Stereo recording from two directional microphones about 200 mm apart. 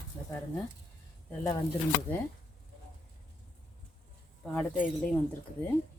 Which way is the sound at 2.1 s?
10° left (ahead or behind).